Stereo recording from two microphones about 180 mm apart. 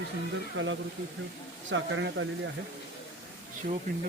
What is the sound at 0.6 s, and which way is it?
Speech, 90° right.